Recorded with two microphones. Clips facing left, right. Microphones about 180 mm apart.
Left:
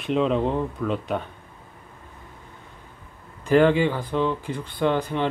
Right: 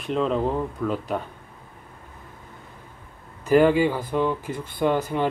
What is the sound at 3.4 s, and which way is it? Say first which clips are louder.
Speech: right 1 dB; 10° right (ahead or behind).